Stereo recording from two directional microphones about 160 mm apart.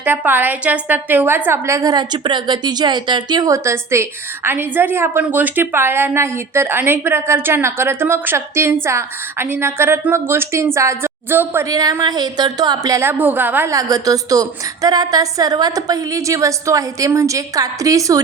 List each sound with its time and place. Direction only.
0.0 s a woman's voice: 10° right (ahead or behind)